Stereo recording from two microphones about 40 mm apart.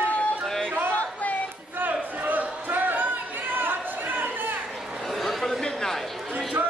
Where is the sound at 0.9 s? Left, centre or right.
Left.